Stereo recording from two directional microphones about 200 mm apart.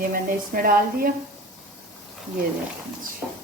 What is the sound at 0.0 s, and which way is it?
A woman's voice, 45° right (ahead or behind).